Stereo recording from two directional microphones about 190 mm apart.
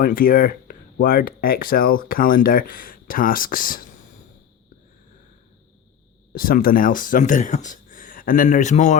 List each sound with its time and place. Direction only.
0.0 s speech: 50° left (ahead or behind)
6.3 s speech: 50° left (ahead or behind)